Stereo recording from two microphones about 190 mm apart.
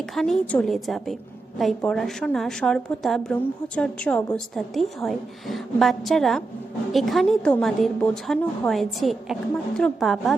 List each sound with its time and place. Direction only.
0.0 s a woman's voice: centre (ahead or behind)